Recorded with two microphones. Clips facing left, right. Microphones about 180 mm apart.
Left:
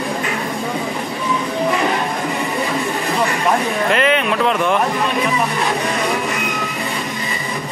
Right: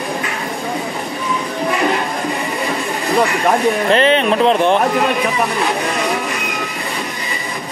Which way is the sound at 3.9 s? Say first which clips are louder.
Right 3 dB; 30° right (ahead or behind).